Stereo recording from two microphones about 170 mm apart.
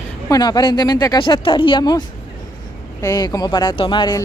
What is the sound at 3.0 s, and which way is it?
Speech, 20° left (ahead or behind).